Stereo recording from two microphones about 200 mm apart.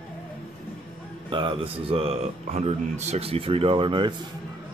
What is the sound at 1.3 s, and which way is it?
Speech, 25° right (ahead or behind).